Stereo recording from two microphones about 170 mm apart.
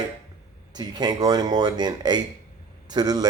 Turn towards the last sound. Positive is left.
turn(degrees=-25)  # may be behind; listen again after turning